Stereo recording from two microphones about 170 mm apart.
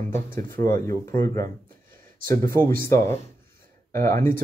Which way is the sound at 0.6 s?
20° left (ahead or behind).